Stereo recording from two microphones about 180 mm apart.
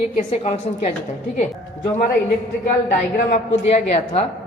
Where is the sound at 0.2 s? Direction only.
40° left (ahead or behind).